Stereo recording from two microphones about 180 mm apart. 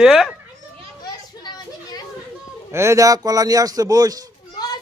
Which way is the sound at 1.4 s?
20° left (ahead or behind).